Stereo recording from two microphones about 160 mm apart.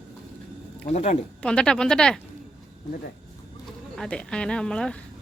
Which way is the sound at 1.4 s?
5° left (ahead or behind).